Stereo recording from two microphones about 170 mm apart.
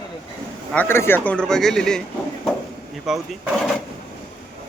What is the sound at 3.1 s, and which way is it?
Speech, centre (ahead or behind).